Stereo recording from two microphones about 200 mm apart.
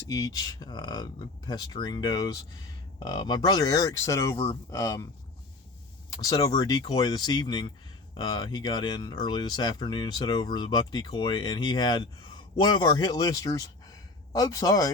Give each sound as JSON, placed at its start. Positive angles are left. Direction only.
{"t": 0.1, "sound": "speech", "side_deg": 20}
{"t": 6.1, "sound": "speech", "side_deg": 20}